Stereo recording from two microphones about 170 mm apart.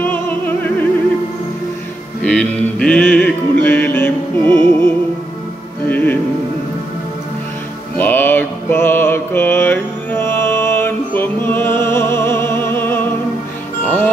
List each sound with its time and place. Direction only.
2.2 s music: 5° left (ahead or behind)
5.9 s music: 10° left (ahead or behind)
8.0 s mantra: 10° left (ahead or behind)
13.8 s music: 10° left (ahead or behind)